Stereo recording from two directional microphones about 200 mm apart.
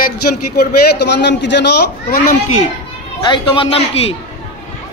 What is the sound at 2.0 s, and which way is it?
Speech, 45° left (ahead or behind).